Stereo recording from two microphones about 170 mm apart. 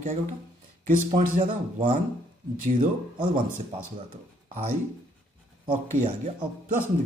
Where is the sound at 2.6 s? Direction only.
50° right (ahead or behind).